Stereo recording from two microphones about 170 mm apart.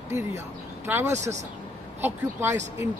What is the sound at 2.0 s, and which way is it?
Speech, 15° right (ahead or behind).